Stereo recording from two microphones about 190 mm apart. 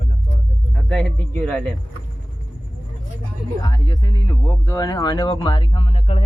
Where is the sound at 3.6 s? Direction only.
20° left (ahead or behind).